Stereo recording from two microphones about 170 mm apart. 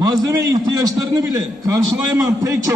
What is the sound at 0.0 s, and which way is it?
Speech, 20° right (ahead or behind).